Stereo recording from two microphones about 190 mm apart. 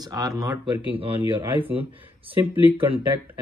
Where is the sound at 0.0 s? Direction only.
20° right (ahead or behind).